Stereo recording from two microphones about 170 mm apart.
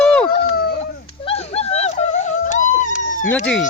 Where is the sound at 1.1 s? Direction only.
35° left (ahead or behind); by 3.3 s 50° left (ahead or behind).